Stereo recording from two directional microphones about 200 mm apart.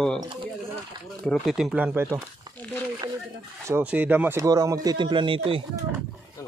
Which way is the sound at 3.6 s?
10° right (ahead or behind).